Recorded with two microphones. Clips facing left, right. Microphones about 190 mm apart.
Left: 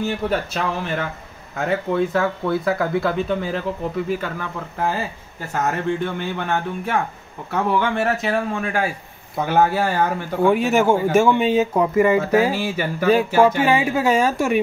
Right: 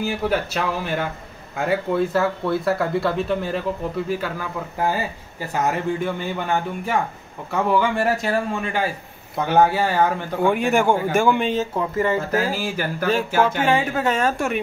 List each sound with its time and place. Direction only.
0.0 s a man's voice: 5° right (ahead or behind)